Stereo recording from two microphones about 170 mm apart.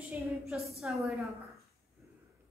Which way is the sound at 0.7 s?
Centre (ahead or behind).